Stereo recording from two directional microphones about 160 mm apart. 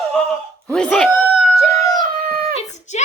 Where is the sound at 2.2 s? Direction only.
70° right (ahead or behind).